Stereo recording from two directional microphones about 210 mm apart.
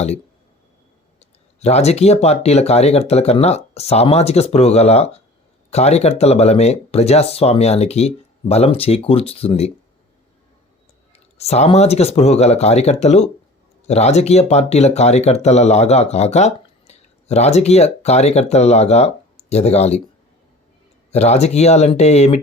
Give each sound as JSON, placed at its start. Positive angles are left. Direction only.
{"t": 1.2, "sound": "speech", "side_deg": 30}
{"t": 11.3, "sound": "speech", "side_deg": 30}
{"t": 21.1, "sound": "speech", "side_deg": 30}